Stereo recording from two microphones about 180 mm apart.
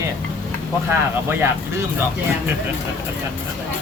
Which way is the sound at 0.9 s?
15° right (ahead or behind).